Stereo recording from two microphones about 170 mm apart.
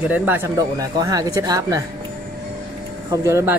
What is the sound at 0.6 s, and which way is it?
A man's voice, 20° right (ahead or behind).